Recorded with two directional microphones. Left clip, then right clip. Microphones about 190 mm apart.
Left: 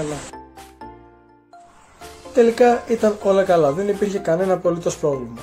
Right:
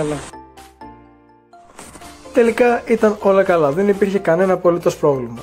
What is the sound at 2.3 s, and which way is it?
Speech, 25° right (ahead or behind).